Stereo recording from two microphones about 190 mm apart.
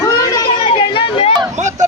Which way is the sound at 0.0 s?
25° left (ahead or behind).